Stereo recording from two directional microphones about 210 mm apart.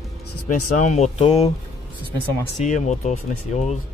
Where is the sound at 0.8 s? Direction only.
35° left (ahead or behind).